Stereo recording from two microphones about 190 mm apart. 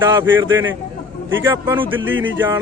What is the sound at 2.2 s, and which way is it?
Speech, 90° right.